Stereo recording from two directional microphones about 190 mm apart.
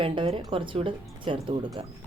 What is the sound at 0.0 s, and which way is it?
Speech, 25° right (ahead or behind).